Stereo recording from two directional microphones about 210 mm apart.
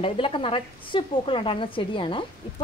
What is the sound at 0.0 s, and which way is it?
A woman's voice, 25° left (ahead or behind).